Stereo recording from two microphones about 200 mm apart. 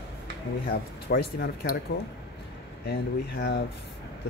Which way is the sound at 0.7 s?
55° left (ahead or behind).